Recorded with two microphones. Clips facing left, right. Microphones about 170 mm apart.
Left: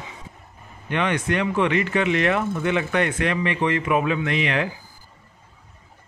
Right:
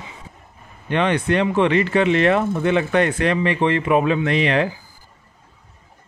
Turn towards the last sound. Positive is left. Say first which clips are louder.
# right 5 dB
turn(degrees=-35)  # may be behind; listen again after turning